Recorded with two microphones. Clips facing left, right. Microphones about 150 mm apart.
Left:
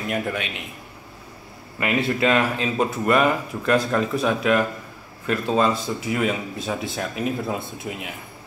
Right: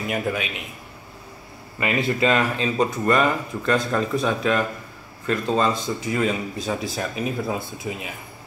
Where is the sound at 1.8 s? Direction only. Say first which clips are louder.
Even; centre (ahead or behind).